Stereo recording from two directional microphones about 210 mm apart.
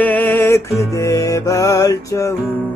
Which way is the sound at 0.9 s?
15° left (ahead or behind).